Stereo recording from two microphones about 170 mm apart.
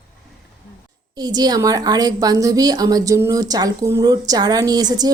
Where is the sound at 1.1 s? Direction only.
25° right (ahead or behind).